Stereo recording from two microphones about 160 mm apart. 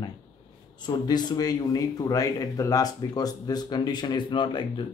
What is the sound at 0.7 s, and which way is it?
Speech, 25° left (ahead or behind).